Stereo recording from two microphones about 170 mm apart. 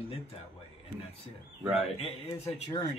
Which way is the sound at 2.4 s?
20° left (ahead or behind).